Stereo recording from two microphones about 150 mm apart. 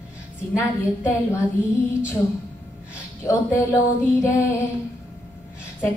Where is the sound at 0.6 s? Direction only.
20° left (ahead or behind).